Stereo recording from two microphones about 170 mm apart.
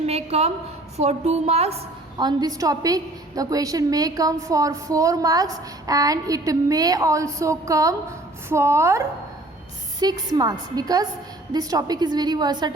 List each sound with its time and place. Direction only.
0.0 s a sound: 40° right (ahead or behind)
0.9 s a woman's voice: 40° right (ahead or behind)
2.1 s a woman's voice: 25° right (ahead or behind)